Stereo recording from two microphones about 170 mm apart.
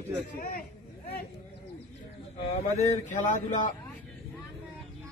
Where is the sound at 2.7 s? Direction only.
45° left (ahead or behind).